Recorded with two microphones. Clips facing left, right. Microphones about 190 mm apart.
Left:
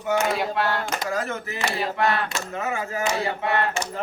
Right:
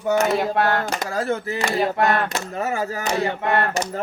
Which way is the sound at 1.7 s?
50° right (ahead or behind).